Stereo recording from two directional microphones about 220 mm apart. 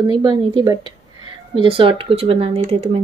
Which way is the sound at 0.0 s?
20° right (ahead or behind).